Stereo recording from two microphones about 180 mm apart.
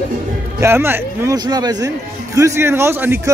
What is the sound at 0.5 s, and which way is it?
A man's voice, 15° right (ahead or behind).